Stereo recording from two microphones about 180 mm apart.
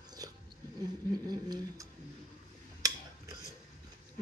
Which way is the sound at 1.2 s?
20° right (ahead or behind).